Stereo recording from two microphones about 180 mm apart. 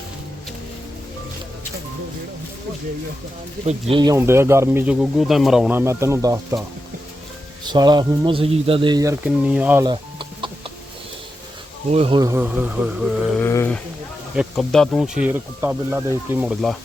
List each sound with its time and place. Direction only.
3.7 s speech: 30° right (ahead or behind); by 4.9 s 15° right (ahead or behind)
4.9 s speech: centre (ahead or behind); by 6.6 s 15° right (ahead or behind)
7.6 s speech: 25° right (ahead or behind)
9.2 s speech: 5° right (ahead or behind)
9.8 s chicken: 25° right (ahead or behind)
11.9 s speech: 35° right (ahead or behind)
12.2 s speech: 15° right (ahead or behind)
13.4 s speech: 15° left (ahead or behind); by 16.5 s 15° right (ahead or behind)